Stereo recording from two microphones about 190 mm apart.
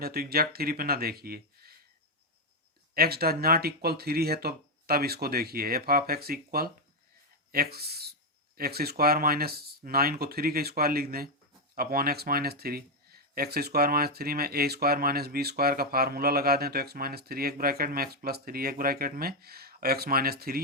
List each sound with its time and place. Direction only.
0.0 s speech: 55° right (ahead or behind)
2.9 s speech: 55° right (ahead or behind)